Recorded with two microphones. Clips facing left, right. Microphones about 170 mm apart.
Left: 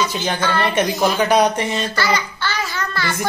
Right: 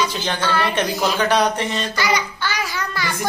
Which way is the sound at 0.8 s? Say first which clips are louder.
Left 3 dB; 10° left (ahead or behind).